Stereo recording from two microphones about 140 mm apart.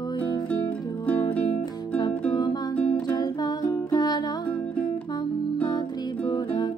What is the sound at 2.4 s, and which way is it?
Music, 30° left (ahead or behind).